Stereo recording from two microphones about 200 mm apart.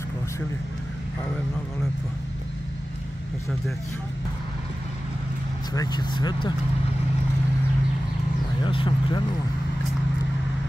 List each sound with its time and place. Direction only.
5.7 s speech: 20° left (ahead or behind)
8.6 s speech: 25° left (ahead or behind)